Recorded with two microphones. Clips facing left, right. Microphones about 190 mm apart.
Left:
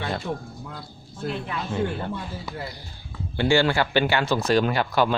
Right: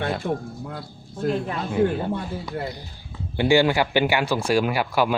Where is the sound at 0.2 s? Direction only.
55° right (ahead or behind).